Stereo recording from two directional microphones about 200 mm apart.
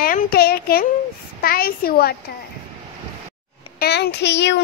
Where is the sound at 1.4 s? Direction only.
50° left (ahead or behind).